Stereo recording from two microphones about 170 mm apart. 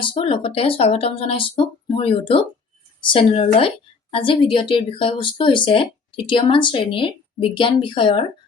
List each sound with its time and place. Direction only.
0.0 s speech: 30° left (ahead or behind)